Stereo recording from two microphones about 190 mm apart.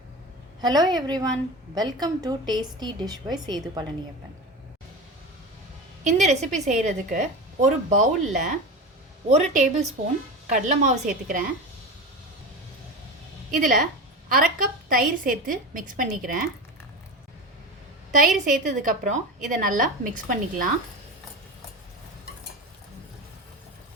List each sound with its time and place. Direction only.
0.6 s a woman's voice: 20° right (ahead or behind)
6.1 s a woman's voice: 35° right (ahead or behind)
13.5 s a woman's voice: 45° right (ahead or behind)
18.1 s a woman's voice: 40° right (ahead or behind)